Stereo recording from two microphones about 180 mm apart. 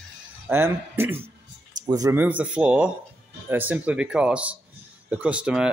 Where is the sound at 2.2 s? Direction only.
10° right (ahead or behind).